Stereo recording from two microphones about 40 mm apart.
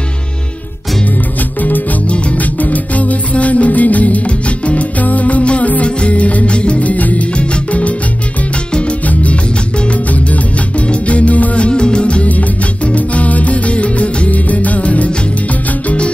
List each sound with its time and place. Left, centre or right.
2.6 s music: left
10.9 s music: left
12.3 s music: left